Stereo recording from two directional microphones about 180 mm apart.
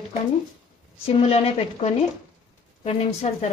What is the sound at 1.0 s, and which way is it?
A woman's voice, 35° left (ahead or behind).